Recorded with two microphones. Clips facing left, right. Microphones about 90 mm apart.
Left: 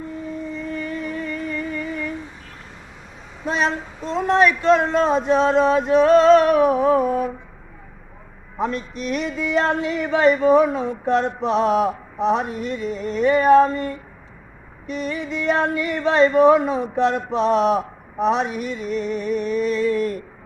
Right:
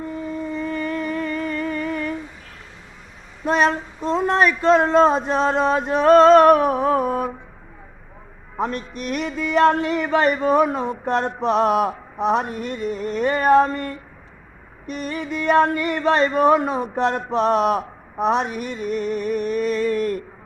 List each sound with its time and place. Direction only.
0.5 s music: 50° right (ahead or behind)
3.4 s speech: 55° right (ahead or behind)
8.6 s music: 50° right (ahead or behind)